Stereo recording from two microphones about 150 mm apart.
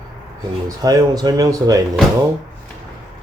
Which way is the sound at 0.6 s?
25° right (ahead or behind).